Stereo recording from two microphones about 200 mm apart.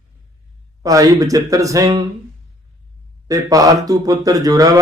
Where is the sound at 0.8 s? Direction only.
15° right (ahead or behind).